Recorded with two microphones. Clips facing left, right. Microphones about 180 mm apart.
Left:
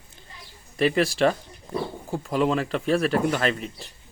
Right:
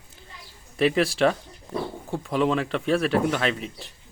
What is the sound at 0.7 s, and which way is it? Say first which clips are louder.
Speech: even; centre (ahead or behind).